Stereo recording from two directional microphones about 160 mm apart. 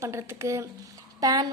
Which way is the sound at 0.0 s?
15° right (ahead or behind).